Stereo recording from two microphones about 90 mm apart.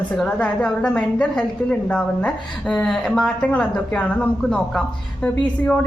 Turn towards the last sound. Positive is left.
turn(degrees=15)  # may be behind; listen again after turning